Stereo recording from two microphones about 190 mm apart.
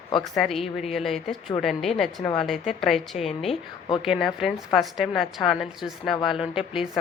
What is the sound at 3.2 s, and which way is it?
Speech, 30° left (ahead or behind).